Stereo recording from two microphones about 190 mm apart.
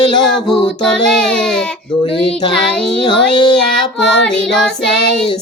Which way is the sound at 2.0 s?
30° left (ahead or behind).